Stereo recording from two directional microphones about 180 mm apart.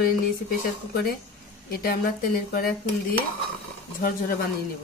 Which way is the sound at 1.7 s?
55° left (ahead or behind).